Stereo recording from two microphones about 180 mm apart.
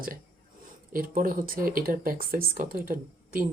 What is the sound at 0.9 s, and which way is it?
Speech, 50° right (ahead or behind).